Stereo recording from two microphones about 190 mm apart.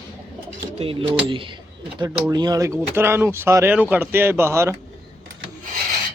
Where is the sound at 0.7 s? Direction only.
30° right (ahead or behind); by 4.8 s 15° right (ahead or behind).